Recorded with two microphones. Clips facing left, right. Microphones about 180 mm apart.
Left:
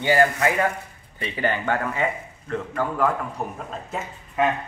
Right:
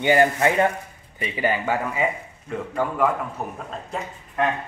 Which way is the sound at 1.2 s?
10° right (ahead or behind).